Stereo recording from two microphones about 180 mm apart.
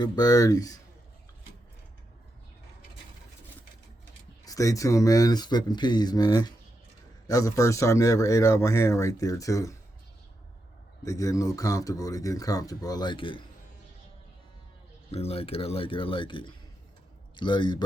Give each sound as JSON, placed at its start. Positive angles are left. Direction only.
{"t": 0.0, "sound": "speech", "side_deg": 20}
{"t": 4.4, "sound": "a man's voice", "side_deg": 20}
{"t": 11.0, "sound": "speech", "side_deg": 20}
{"t": 15.1, "sound": "speech", "side_deg": 35}